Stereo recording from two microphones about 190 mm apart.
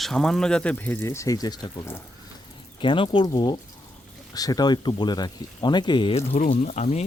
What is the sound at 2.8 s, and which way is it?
Speech, 25° left (ahead or behind).